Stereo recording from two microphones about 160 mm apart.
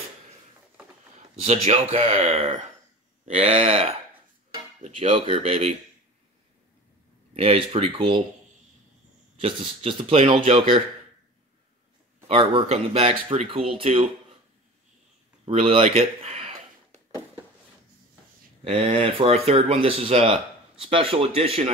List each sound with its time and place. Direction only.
1.4 s speech: 40° right (ahead or behind)
7.3 s speech: 35° right (ahead or behind)
9.4 s speech: 35° right (ahead or behind)
12.3 s speech: 40° right (ahead or behind)
15.4 s a sound: 40° right (ahead or behind)
18.6 s speech: 35° right (ahead or behind)